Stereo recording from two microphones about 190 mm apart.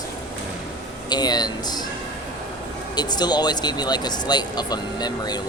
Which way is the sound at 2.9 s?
20° left (ahead or behind).